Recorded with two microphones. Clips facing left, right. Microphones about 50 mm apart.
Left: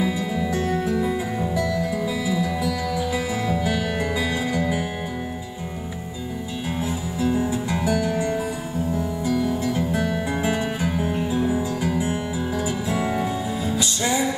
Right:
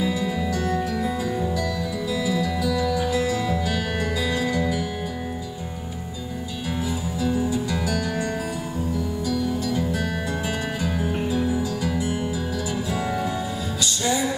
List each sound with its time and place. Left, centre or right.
0.0 s music: left
6.8 s music: left